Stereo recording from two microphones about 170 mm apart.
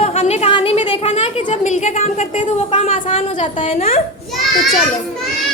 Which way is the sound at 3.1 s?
30° left (ahead or behind).